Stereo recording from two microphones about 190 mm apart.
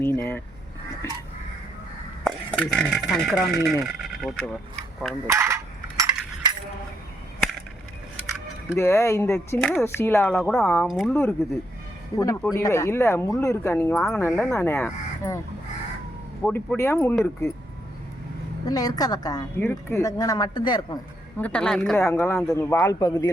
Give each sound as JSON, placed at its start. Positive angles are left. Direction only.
{"t": 0.0, "sound": "speech", "side_deg": 10}
{"t": 2.2, "sound": "speech", "side_deg": 5}
{"t": 5.2, "sound": "a sound", "side_deg": -15}
{"t": 8.7, "sound": "speech", "side_deg": 15}
{"t": 11.1, "sound": "speech", "side_deg": 10}
{"t": 13.9, "sound": "speech", "side_deg": 0}
{"t": 14.2, "sound": "speech", "side_deg": 15}
{"t": 16.4, "sound": "speech", "side_deg": 10}
{"t": 18.7, "sound": "speech", "side_deg": 20}
{"t": 21.3, "sound": "speech", "side_deg": 5}